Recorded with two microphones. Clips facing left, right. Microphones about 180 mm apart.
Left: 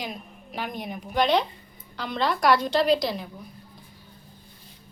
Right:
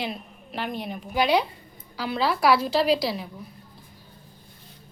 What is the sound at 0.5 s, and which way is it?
Speech, 15° left (ahead or behind).